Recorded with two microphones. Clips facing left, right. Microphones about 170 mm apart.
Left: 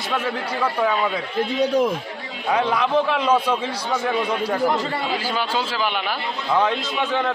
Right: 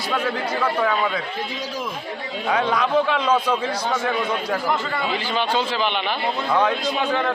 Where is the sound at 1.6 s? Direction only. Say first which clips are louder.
Left 11 dB; 65° left (ahead or behind).